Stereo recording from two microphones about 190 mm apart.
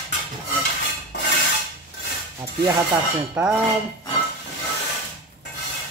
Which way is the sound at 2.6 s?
15° right (ahead or behind).